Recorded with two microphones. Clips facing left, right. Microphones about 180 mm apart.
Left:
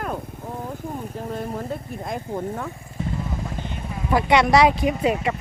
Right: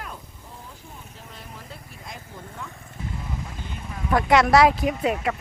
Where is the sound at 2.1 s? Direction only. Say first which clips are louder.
Left 13 dB; 55° left (ahead or behind).